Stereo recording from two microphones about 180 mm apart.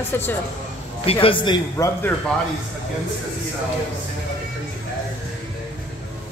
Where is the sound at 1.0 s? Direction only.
30° left (ahead or behind).